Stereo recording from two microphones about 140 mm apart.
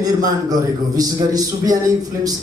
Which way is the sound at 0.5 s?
25° right (ahead or behind).